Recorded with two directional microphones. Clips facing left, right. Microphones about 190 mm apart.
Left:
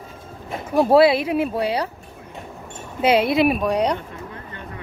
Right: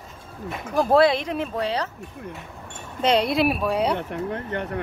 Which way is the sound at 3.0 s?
5° left (ahead or behind).